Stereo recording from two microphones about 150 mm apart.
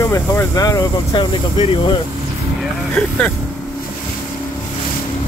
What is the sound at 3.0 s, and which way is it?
Speech, 10° left (ahead or behind).